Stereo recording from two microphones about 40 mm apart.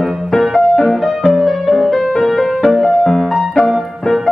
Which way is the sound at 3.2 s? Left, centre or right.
Centre.